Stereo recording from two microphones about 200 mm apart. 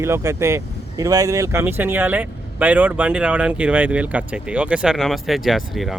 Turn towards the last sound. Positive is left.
turn(degrees=0)  # may be behind; listen again after turning